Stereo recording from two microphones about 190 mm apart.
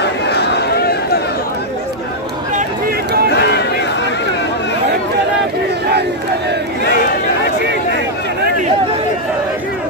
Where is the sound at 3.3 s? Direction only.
65° left (ahead or behind).